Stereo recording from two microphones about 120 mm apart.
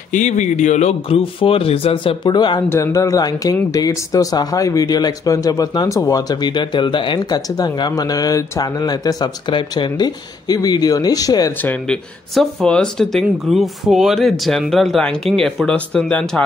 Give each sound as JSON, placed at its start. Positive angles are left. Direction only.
{"t": 0.1, "sound": "speech", "side_deg": 85}
{"t": 2.7, "sound": "a man's voice", "side_deg": 25}
{"t": 11.6, "sound": "speech", "side_deg": 15}